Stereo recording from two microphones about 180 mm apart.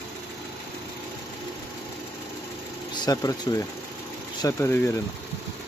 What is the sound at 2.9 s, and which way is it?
Speech, 20° left (ahead or behind).